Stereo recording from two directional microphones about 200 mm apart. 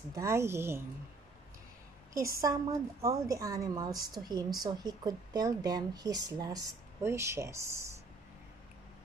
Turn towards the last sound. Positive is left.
turn(degrees=-15)  # may be behind; listen again after turning